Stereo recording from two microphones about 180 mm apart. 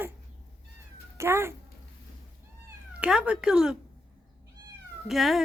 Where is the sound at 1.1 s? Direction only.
15° right (ahead or behind).